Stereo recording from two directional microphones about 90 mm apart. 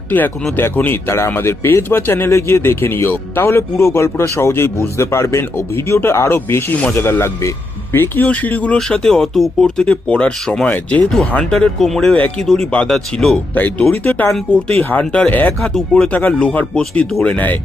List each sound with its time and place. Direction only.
0.5 s speech: 20° left (ahead or behind)
15.6 s speech: 5° left (ahead or behind)
16.1 s speech: 15° left (ahead or behind)